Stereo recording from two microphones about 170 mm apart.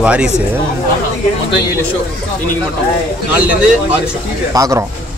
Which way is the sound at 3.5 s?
5° right (ahead or behind).